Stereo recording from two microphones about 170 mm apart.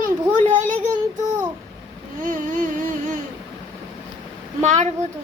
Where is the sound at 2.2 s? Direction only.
50° right (ahead or behind).